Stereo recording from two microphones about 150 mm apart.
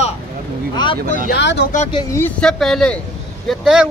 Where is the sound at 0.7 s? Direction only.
30° left (ahead or behind).